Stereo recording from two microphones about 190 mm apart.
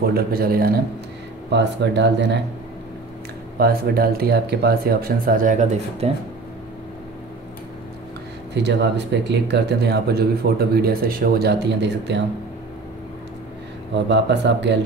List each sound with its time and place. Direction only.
0.1 s speech: 50° right (ahead or behind)
1.5 s speech: 65° right (ahead or behind)
3.5 s speech: 55° right (ahead or behind)
8.6 s speech: 65° right (ahead or behind)
14.0 s speech: 65° right (ahead or behind)